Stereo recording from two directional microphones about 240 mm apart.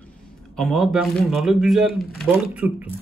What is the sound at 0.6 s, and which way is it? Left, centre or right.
Speech, centre.